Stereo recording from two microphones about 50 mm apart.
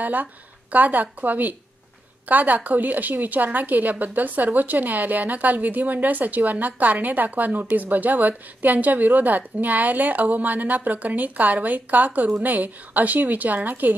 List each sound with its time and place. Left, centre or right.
0.0 s a woman's voice: right